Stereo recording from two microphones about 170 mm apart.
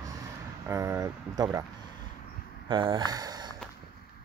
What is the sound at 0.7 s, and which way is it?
Speech, 15° right (ahead or behind).